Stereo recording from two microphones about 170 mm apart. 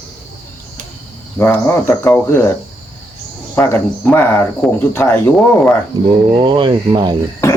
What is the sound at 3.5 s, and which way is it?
Speech, 10° left (ahead or behind).